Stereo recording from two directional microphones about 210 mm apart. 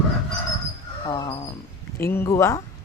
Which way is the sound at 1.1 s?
20° left (ahead or behind).